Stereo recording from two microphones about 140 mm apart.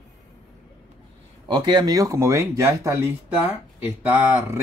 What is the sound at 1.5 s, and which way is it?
Speech, 30° right (ahead or behind).